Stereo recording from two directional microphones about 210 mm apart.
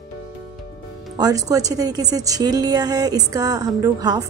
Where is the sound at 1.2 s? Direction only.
15° right (ahead or behind).